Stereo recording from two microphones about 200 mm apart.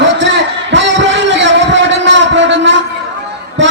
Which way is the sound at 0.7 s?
65° right (ahead or behind).